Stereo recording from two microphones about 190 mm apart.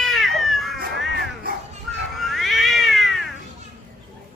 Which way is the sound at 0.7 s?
50° right (ahead or behind).